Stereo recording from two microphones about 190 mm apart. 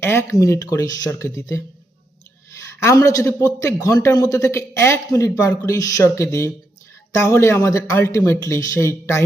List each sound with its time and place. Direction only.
0.0 s a man's voice: 15° left (ahead or behind)
2.8 s a man's voice: 15° left (ahead or behind)